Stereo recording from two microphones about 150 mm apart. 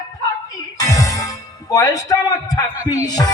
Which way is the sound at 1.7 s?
20° left (ahead or behind).